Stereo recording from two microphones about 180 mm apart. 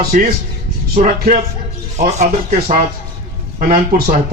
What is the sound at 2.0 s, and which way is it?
Speech, 40° right (ahead or behind).